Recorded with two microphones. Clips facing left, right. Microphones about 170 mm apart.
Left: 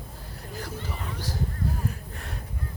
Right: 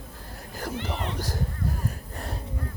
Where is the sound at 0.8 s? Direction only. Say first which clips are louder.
Right 5 dB; 80° right.